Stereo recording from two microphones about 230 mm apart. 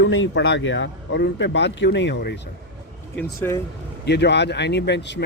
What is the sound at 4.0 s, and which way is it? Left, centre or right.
Speech, left.